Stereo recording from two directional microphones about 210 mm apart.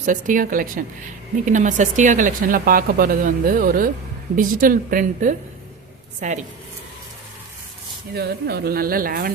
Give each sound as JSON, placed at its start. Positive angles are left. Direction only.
{"t": 0.0, "sound": "speech", "side_deg": -40}
{"t": 8.1, "sound": "speech", "side_deg": -50}